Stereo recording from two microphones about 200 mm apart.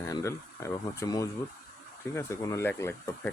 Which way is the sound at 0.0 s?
15° left (ahead or behind).